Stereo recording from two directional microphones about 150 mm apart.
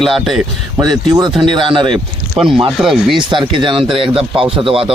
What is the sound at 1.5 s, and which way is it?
Speech, 35° right (ahead or behind).